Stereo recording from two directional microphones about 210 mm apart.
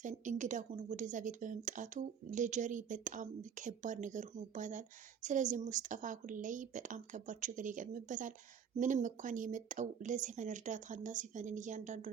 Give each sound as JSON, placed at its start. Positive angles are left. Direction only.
{"t": 0.0, "sound": "speech", "side_deg": -35}